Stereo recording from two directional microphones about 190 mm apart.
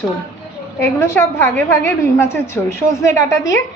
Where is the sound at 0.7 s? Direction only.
10° left (ahead or behind).